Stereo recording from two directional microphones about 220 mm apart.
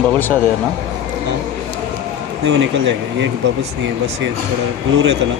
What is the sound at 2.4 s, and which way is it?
Speech, 55° right (ahead or behind).